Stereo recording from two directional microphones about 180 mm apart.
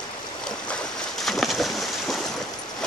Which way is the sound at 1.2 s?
Centre (ahead or behind).